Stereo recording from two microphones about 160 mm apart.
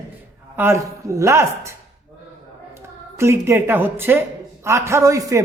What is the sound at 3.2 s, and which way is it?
A man's voice, 15° right (ahead or behind).